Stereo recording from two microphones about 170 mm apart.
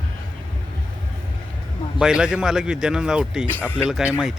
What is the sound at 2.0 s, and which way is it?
A man's voice, 5° right (ahead or behind).